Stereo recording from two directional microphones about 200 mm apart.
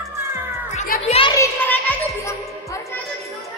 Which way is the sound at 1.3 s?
10° left (ahead or behind).